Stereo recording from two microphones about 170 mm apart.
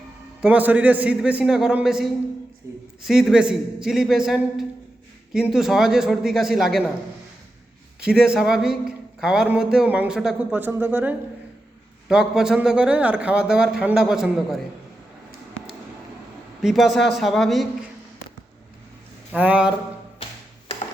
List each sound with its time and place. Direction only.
0.4 s speech: 10° right (ahead or behind)
2.6 s a sound: 20° right (ahead or behind)
3.0 s a man's voice: centre (ahead or behind)
8.0 s a man's voice: 5° right (ahead or behind)
16.6 s a man's voice: centre (ahead or behind)
19.3 s speech: 10° right (ahead or behind)
20.2 s music: 30° left (ahead or behind)